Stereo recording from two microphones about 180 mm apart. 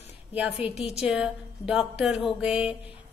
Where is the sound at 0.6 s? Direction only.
30° left (ahead or behind).